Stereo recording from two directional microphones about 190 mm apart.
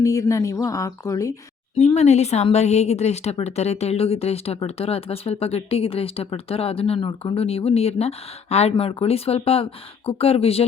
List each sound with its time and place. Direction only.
0.0 s speech: 15° left (ahead or behind)
1.8 s a woman's voice: 35° left (ahead or behind)